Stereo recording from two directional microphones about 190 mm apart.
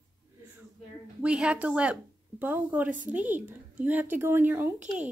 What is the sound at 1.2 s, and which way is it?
A woman's voice, 5° right (ahead or behind).